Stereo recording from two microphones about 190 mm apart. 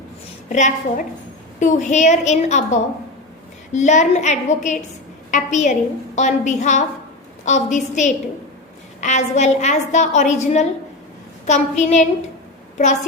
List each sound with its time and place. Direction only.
0.4 s a woman's voice: 40° left (ahead or behind)